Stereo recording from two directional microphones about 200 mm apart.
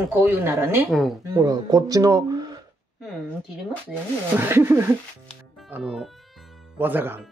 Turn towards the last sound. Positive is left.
turn(degrees=-10)  # may be behind; listen again after turning